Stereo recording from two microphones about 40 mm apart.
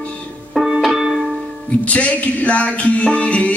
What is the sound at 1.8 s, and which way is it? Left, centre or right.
Music, left.